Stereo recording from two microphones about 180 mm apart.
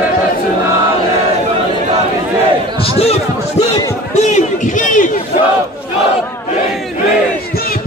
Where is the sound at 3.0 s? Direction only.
35° left (ahead or behind).